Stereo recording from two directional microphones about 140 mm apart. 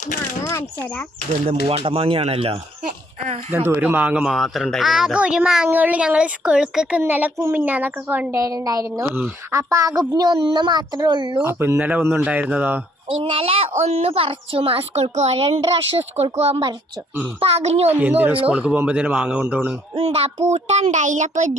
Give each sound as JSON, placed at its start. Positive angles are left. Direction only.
{"t": 0.4, "sound": "speech", "side_deg": 15}
{"t": 1.5, "sound": "a woman's voice", "side_deg": -45}
{"t": 3.5, "sound": "a woman's voice", "side_deg": -15}
{"t": 11.4, "sound": "speech", "side_deg": -15}
{"t": 13.1, "sound": "a woman's voice", "side_deg": -40}
{"t": 18.2, "sound": "speech", "side_deg": -10}
{"t": 19.9, "sound": "a woman's voice", "side_deg": -45}